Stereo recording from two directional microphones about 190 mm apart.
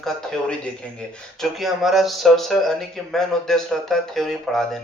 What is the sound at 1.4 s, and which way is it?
A man's voice, centre (ahead or behind).